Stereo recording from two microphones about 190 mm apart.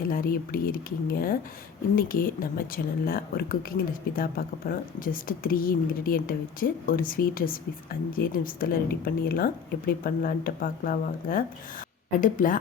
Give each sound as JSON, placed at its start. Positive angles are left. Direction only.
{"t": 0.1, "sound": "a woman's voice", "side_deg": 50}